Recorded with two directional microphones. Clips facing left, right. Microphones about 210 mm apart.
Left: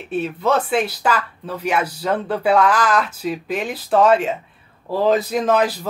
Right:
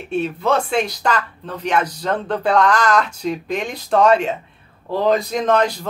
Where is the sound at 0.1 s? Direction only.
Centre (ahead or behind).